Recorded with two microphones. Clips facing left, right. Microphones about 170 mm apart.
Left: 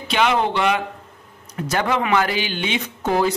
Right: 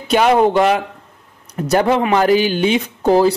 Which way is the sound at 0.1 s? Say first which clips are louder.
Right 7 dB; 45° right (ahead or behind).